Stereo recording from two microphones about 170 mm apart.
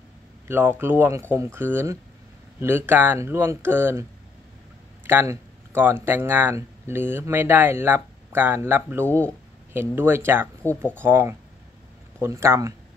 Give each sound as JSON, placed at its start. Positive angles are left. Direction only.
{"t": 0.5, "sound": "speech", "side_deg": -15}
{"t": 5.0, "sound": "speech", "side_deg": -15}